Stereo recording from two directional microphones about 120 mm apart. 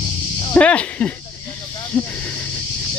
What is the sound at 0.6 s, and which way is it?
Speech, 10° left (ahead or behind).